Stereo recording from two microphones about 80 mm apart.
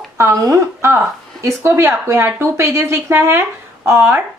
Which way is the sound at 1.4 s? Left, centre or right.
Right.